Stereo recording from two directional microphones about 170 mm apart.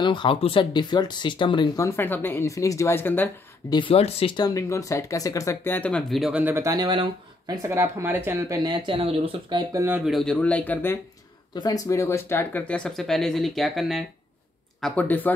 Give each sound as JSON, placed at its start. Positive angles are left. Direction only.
{"t": 0.0, "sound": "speech", "side_deg": 25}
{"t": 1.9, "sound": "speech", "side_deg": 10}
{"t": 3.7, "sound": "speech", "side_deg": 30}
{"t": 8.8, "sound": "speech", "side_deg": -35}
{"t": 10.1, "sound": "speech", "side_deg": 5}
{"t": 11.5, "sound": "speech", "side_deg": 20}